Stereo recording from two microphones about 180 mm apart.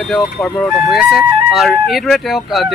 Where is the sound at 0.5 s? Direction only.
Centre (ahead or behind).